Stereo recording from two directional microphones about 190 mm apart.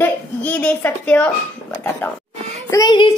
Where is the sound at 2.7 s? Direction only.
20° left (ahead or behind).